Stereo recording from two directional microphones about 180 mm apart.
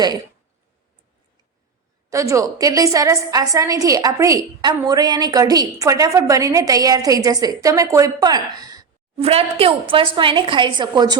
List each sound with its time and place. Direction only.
2.0 s a woman's voice: 15° right (ahead or behind)
9.2 s a woman's voice: 35° right (ahead or behind)